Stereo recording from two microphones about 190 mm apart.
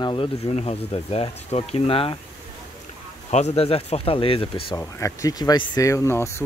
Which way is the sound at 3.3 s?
35° left (ahead or behind).